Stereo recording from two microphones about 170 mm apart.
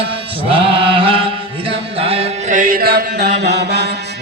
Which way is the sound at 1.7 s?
35° right (ahead or behind).